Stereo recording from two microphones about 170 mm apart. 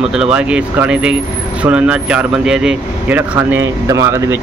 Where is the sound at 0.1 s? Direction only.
5° right (ahead or behind).